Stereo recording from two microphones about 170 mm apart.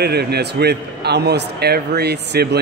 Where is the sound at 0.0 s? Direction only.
70° right (ahead or behind).